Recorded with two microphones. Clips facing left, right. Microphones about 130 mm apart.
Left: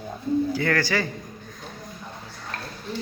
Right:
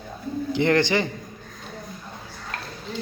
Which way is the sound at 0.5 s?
20° right (ahead or behind).